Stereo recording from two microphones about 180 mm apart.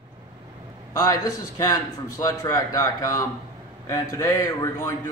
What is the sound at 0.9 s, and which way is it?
Speech, 20° left (ahead or behind).